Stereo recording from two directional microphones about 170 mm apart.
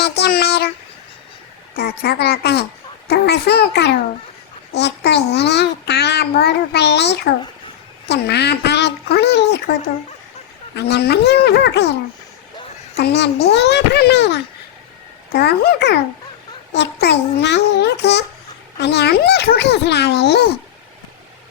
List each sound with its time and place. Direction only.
0.0 s speech: 75° left (ahead or behind)
1.7 s a child's voice: 65° left (ahead or behind); by 9.7 s 85° left
10.8 s a child's voice: 80° left
13.0 s a child's voice: 80° left
15.3 s a child's voice: 70° left (ahead or behind)
16.7 s a child's voice: 90° left